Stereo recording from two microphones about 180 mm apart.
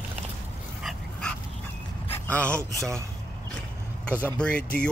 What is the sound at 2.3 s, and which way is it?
Speech, 5° left (ahead or behind).